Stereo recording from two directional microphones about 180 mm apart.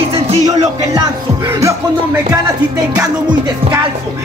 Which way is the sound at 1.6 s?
10° right (ahead or behind).